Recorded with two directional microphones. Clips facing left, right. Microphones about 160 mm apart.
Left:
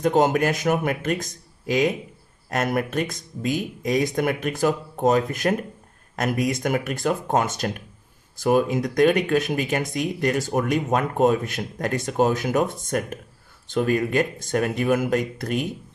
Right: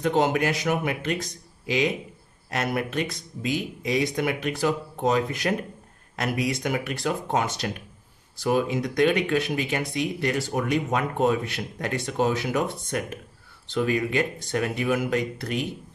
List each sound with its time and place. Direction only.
0.0 s speech: 45° left (ahead or behind)